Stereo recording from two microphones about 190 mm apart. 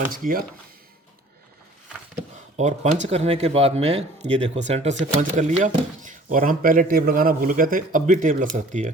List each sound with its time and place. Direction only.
0.0 s speech: 45° right (ahead or behind)
2.6 s speech: 40° right (ahead or behind)